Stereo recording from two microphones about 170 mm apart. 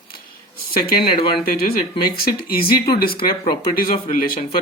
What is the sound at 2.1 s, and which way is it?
Speech, 60° left (ahead or behind).